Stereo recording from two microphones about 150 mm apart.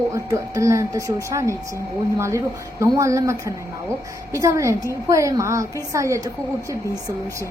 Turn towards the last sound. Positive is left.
turn(degrees=-20)  # may be behind; listen again after turning